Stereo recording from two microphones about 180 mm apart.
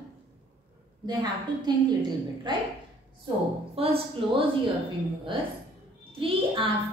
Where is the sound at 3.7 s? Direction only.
35° right (ahead or behind).